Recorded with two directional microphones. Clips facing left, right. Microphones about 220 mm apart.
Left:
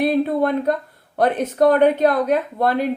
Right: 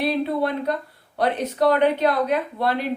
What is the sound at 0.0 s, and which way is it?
Speech, 50° left (ahead or behind).